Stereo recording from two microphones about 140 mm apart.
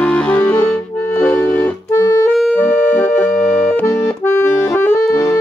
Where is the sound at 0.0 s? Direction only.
10° left (ahead or behind).